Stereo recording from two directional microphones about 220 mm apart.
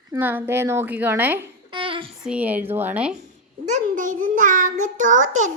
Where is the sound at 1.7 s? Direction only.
25° right (ahead or behind).